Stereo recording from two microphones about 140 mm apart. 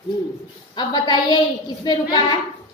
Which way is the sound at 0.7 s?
30° left (ahead or behind).